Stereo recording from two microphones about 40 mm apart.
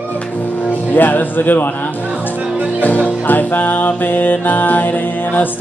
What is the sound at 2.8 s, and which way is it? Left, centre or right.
Music, left.